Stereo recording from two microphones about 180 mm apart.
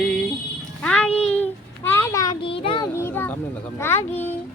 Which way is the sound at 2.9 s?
10° left (ahead or behind).